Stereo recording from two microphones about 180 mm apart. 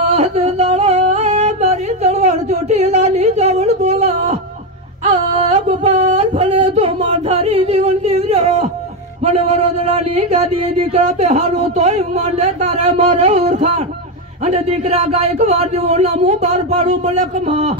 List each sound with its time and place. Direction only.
0.1 s singing: 35° right (ahead or behind)
5.0 s a sound: 40° right (ahead or behind)
9.2 s speech: 35° right (ahead or behind)